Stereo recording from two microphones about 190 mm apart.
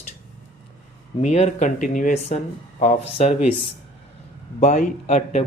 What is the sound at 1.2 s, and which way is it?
Speech, 35° left (ahead or behind).